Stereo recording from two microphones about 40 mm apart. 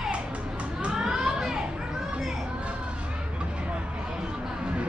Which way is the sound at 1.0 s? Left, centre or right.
Centre.